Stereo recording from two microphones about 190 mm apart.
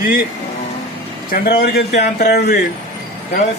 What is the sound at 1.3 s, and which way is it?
A man's voice, 50° left (ahead or behind).